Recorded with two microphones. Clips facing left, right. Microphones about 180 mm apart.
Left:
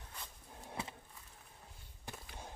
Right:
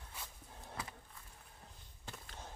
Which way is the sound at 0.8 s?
25° left (ahead or behind).